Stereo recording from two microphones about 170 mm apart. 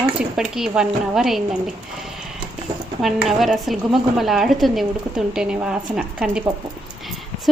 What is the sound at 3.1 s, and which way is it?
A woman's voice, centre (ahead or behind).